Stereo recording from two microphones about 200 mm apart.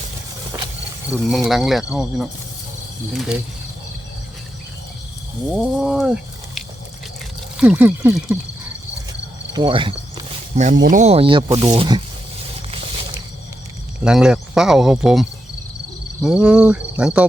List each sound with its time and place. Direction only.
1.1 s speech: centre (ahead or behind)
5.5 s speech: 5° right (ahead or behind)
9.6 s cricket: 25° right (ahead or behind)
10.9 s speech: 35° right (ahead or behind)
14.0 s speech: 5° right (ahead or behind)